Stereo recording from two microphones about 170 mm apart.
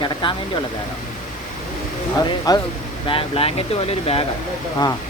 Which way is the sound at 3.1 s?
35° left (ahead or behind).